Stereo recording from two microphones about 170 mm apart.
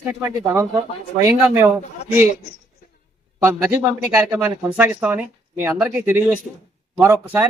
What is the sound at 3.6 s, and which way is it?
Speech, 15° right (ahead or behind).